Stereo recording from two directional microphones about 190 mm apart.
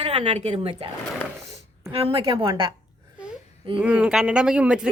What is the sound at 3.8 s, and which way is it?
A child's voice, 5° right (ahead or behind).